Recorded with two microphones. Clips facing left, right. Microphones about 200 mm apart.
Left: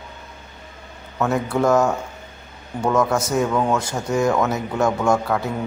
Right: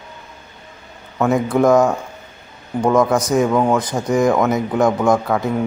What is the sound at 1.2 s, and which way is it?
A man's voice, 15° right (ahead or behind).